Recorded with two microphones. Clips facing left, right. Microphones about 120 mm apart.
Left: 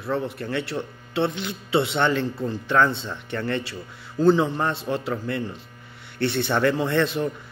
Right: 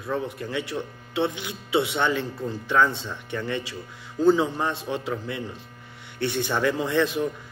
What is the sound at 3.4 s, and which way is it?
Speech, 55° left (ahead or behind).